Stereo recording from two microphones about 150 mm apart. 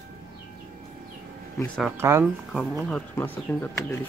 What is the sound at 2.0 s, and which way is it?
Speech, 15° right (ahead or behind).